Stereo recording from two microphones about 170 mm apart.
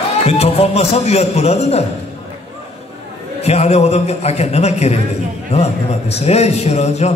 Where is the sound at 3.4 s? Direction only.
40° left (ahead or behind).